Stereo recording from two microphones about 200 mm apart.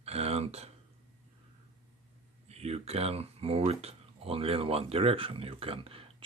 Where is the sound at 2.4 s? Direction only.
30° right (ahead or behind).